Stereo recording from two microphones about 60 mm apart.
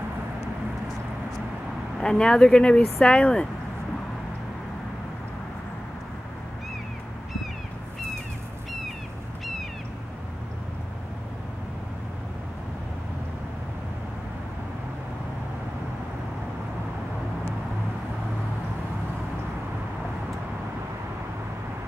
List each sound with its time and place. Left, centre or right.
2.0 s speech: centre